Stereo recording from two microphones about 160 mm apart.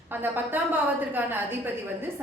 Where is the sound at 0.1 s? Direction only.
10° right (ahead or behind).